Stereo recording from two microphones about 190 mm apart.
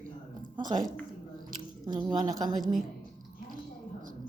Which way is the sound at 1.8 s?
20° right (ahead or behind).